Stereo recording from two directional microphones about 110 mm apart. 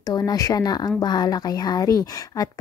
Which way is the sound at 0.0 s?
35° left (ahead or behind).